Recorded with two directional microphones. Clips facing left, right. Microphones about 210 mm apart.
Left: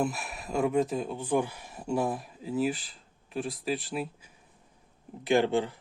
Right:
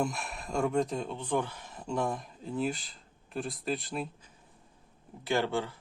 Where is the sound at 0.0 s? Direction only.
5° left (ahead or behind).